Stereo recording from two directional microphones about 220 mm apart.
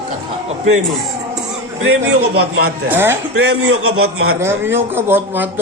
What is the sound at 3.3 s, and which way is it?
Speech, 55° right (ahead or behind).